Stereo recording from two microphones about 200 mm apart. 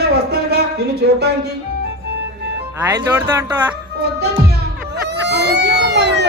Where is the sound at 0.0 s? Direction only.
55° right (ahead or behind).